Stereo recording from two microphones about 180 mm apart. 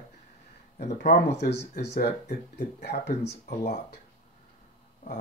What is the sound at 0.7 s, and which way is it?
Speech, 40° left (ahead or behind).